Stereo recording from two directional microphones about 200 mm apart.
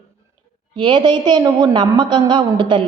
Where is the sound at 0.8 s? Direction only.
20° right (ahead or behind).